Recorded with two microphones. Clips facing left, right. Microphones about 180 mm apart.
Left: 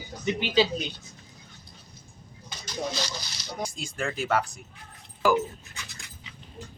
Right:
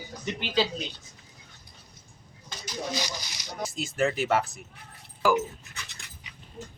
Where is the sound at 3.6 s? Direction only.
5° right (ahead or behind).